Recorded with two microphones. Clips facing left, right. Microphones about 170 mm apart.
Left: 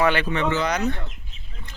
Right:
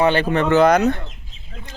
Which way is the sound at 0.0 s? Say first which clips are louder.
Right 4 dB; 30° right (ahead or behind).